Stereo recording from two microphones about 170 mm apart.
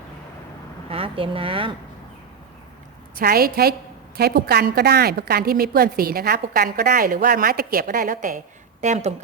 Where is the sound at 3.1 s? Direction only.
65° right (ahead or behind).